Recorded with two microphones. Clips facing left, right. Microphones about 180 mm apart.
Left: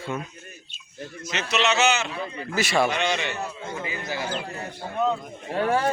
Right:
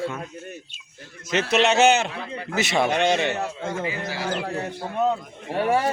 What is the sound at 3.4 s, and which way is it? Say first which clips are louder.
Speech: right 4 dB; 85° right.